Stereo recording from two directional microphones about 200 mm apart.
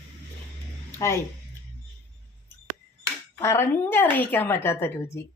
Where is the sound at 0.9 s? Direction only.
15° left (ahead or behind).